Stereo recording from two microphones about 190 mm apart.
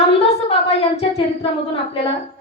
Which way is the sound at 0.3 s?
35° left (ahead or behind).